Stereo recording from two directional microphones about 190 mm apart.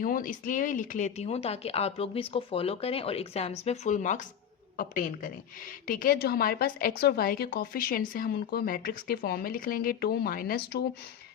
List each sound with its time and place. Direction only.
0.0 s a woman's voice: 45° left (ahead or behind)